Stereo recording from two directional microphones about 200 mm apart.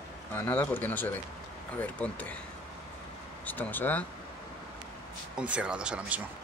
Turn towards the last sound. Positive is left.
turn(degrees=-5)  # may be behind; listen again after turning